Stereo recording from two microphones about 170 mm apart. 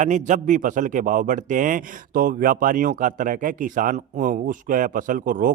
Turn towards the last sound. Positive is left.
turn(degrees=-55)  # may be behind; listen again after turning